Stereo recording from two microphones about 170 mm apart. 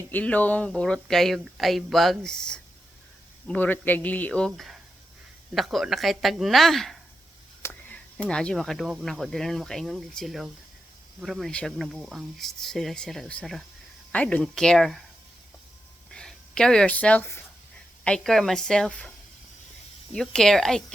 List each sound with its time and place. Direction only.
0.1 s speech: 10° left (ahead or behind)
16.1 s speech: 5° left (ahead or behind)
20.1 s speech: centre (ahead or behind)